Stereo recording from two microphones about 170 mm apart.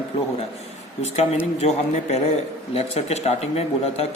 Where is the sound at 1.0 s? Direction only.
40° left (ahead or behind).